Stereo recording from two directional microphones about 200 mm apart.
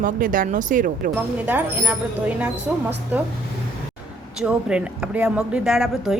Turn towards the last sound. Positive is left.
turn(degrees=0)  # may be behind; listen again after turning